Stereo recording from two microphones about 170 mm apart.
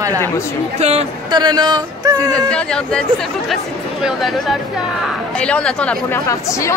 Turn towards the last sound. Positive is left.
turn(degrees=20)  # may be behind; listen again after turning